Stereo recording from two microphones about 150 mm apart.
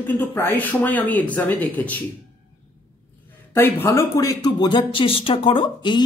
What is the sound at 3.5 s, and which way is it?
Speech, 15° left (ahead or behind).